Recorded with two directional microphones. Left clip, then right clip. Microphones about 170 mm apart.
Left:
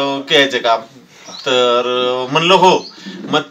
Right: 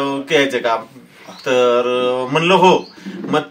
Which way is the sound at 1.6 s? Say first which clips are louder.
Even; 15° right (ahead or behind).